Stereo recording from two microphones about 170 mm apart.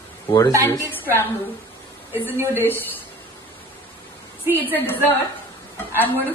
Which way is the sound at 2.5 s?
10° left (ahead or behind).